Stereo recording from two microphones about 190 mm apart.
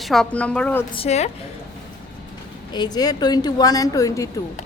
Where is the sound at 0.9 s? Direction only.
35° left (ahead or behind).